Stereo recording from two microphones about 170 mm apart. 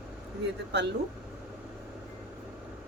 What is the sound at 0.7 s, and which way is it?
Speech, 80° right.